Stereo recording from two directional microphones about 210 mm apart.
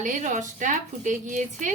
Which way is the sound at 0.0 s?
35° right (ahead or behind).